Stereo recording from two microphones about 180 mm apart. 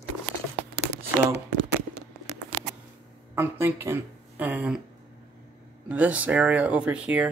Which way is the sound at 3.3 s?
15° right (ahead or behind).